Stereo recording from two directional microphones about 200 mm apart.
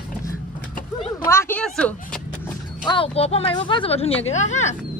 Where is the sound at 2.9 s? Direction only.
30° left (ahead or behind).